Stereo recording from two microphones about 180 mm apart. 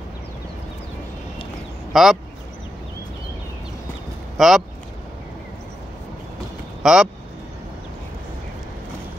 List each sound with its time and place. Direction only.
1.9 s speech: centre (ahead or behind)
4.4 s speech: centre (ahead or behind)
6.8 s speech: 5° right (ahead or behind)